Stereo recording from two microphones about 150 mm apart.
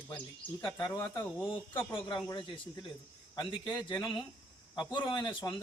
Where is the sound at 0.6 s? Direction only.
25° left (ahead or behind).